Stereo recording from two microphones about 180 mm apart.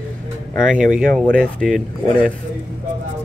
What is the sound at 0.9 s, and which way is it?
Speech, 5° right (ahead or behind).